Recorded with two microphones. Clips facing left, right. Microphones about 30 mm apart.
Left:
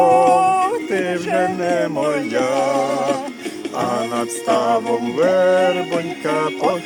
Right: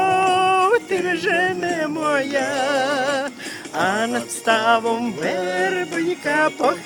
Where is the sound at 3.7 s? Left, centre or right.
Right.